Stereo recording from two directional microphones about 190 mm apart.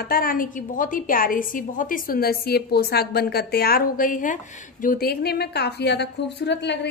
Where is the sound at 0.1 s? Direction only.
50° left (ahead or behind).